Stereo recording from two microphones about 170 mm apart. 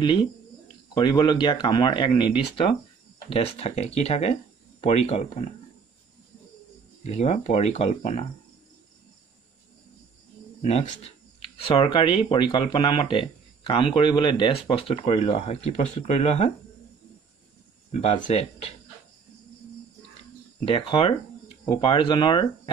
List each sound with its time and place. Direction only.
0.9 s speech: 25° left (ahead or behind)
7.0 s speech: 40° left (ahead or behind)
10.6 s speech: 40° left (ahead or behind)
18.0 s speech: 45° left (ahead or behind)
20.6 s speech: 35° left (ahead or behind)